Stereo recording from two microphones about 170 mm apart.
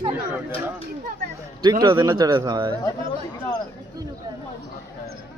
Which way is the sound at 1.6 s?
25° right (ahead or behind).